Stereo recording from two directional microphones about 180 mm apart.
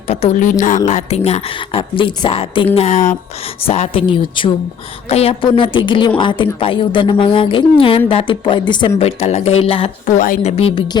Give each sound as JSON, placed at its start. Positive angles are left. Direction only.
{"t": 0.1, "sound": "a woman's voice", "side_deg": 40}
{"t": 10.2, "sound": "speech", "side_deg": 50}
{"t": 10.6, "sound": "a woman's voice", "side_deg": 30}